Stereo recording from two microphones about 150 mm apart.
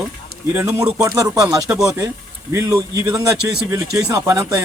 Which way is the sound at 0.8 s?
10° right (ahead or behind).